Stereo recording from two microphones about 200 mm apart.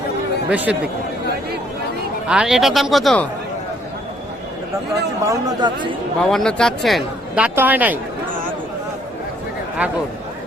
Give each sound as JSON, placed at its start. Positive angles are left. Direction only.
{"t": 0.5, "sound": "speech", "side_deg": -5}
{"t": 2.2, "sound": "speech", "side_deg": -5}
{"t": 5.2, "sound": "a man's voice", "side_deg": -15}
{"t": 6.1, "sound": "speech", "side_deg": 5}